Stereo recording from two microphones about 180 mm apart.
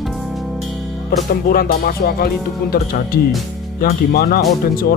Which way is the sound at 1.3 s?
55° left (ahead or behind).